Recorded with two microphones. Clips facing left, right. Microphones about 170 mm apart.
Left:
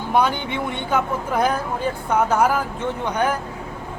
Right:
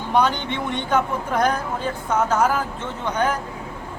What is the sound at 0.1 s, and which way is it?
Speech, 10° left (ahead or behind).